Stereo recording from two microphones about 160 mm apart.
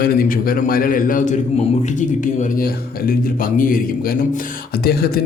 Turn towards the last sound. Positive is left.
turn(degrees=75)  # may be behind; listen again after turning